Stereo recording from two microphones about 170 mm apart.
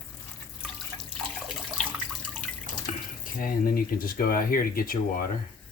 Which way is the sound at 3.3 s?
55° left (ahead or behind).